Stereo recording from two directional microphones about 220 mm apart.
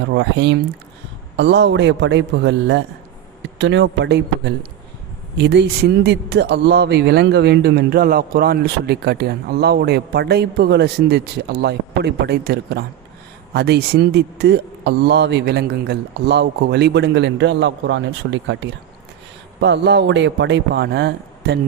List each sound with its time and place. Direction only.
0.1 s speech: 50° right (ahead or behind)